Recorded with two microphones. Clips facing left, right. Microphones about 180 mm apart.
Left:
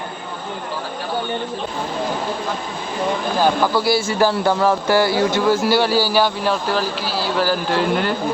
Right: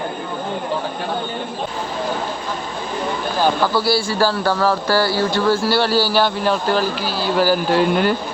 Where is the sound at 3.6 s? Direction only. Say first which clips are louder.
Even; 15° left (ahead or behind); by 7.6 s 5° right (ahead or behind).